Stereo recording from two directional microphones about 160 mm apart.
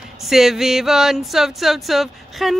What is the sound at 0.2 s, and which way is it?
Speech, centre (ahead or behind).